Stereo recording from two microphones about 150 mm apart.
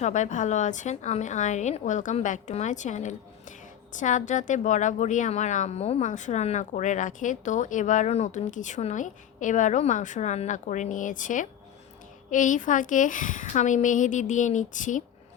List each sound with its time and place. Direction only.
0.0 s a woman's voice: 55° left (ahead or behind)